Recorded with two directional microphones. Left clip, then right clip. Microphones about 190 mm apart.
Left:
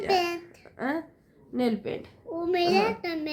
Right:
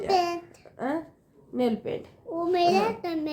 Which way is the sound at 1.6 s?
15° left (ahead or behind).